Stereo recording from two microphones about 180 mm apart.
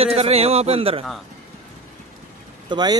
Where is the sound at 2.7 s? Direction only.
25° right (ahead or behind).